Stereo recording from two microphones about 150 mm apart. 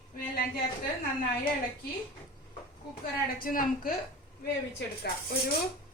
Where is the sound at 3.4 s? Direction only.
70° left (ahead or behind).